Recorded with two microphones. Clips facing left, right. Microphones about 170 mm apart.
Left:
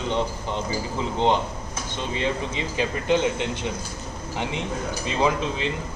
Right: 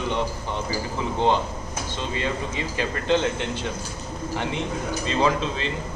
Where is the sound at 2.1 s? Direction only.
20° left (ahead or behind).